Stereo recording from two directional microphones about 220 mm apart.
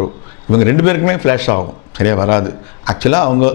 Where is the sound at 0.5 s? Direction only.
15° left (ahead or behind).